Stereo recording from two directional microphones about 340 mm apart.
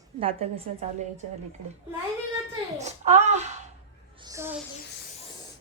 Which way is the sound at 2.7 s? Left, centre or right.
Centre.